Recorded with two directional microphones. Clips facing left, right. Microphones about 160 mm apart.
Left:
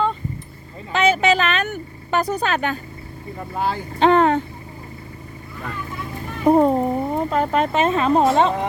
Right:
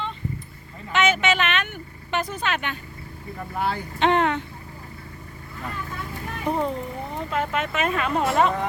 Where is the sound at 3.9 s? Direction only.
35° left (ahead or behind).